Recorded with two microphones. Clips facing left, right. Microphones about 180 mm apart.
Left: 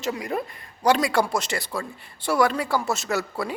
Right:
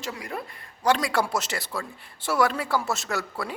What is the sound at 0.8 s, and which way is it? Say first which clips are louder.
Speech: left 3 dB; 10° left (ahead or behind).